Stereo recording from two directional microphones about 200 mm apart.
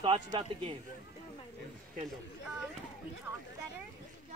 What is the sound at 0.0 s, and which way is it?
Speech, 30° right (ahead or behind).